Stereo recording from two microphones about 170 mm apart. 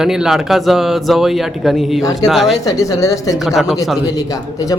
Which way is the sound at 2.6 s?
20° left (ahead or behind).